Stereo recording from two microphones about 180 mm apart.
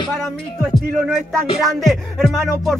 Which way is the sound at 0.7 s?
Centre (ahead or behind).